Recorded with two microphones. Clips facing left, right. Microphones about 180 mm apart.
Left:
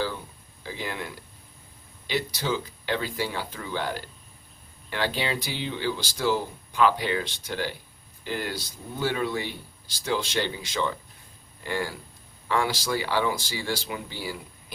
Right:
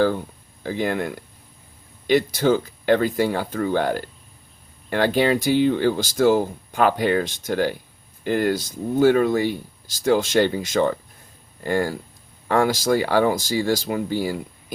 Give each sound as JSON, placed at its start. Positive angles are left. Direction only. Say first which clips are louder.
{"t": 0.6, "sound": "speech", "louder": "right 10 dB", "side_deg": -50}